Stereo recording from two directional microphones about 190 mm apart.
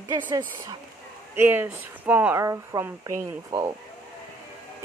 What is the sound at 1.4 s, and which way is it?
Speech, 10° right (ahead or behind).